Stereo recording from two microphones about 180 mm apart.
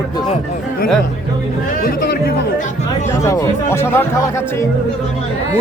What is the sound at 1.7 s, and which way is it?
Speech, 55° left (ahead or behind).